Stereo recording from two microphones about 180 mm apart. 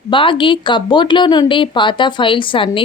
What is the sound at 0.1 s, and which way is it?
Speech, 30° left (ahead or behind).